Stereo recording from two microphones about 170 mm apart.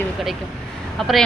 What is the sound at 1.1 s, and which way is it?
Speech, centre (ahead or behind).